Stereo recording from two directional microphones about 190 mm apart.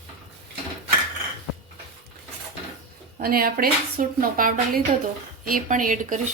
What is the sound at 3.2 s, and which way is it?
A woman's voice, 50° right (ahead or behind).